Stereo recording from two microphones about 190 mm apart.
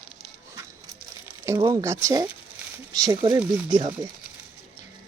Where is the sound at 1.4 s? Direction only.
15° right (ahead or behind).